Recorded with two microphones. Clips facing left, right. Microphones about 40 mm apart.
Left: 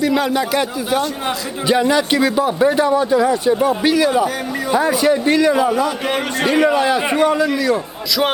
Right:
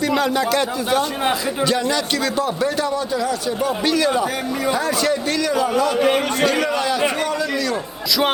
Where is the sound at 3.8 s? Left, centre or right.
Centre.